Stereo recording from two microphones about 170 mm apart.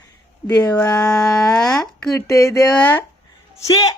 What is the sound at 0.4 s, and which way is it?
Speech, 5° left (ahead or behind).